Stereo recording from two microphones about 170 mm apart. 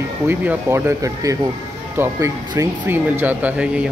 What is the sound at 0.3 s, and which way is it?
Speech, 10° right (ahead or behind).